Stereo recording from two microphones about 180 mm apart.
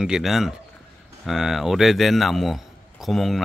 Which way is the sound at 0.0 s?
Centre (ahead or behind).